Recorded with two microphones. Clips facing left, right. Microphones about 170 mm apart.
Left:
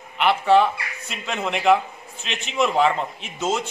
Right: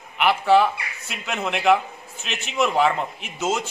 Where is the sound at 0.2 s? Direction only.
5° right (ahead or behind).